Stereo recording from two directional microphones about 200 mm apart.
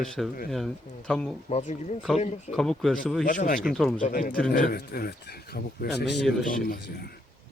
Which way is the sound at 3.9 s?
40° left (ahead or behind).